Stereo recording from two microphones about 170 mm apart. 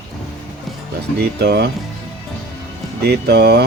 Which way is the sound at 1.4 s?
70° right (ahead or behind).